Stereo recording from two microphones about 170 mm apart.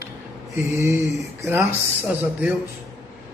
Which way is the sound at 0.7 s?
15° right (ahead or behind).